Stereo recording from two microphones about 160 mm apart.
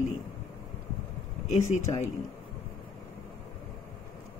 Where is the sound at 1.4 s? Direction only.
45° left (ahead or behind).